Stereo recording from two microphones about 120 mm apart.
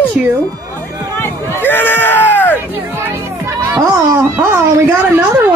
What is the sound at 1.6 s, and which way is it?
Crowd, 15° left (ahead or behind).